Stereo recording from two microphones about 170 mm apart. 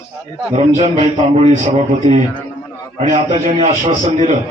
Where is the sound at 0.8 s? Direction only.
35° right (ahead or behind).